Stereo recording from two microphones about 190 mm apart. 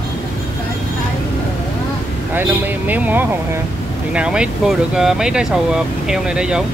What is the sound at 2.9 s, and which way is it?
Speech, 10° right (ahead or behind).